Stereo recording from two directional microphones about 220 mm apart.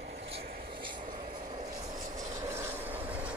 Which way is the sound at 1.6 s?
20° right (ahead or behind).